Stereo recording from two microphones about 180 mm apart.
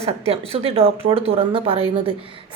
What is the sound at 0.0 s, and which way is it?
A woman's voice, 35° right (ahead or behind).